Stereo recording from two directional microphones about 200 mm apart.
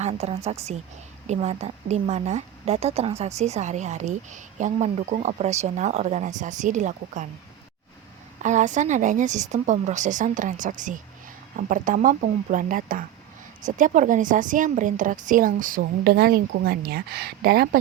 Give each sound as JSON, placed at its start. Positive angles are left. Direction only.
{"t": 0.0, "sound": "a woman's voice", "side_deg": -30}
{"t": 8.4, "sound": "a woman's voice", "side_deg": -35}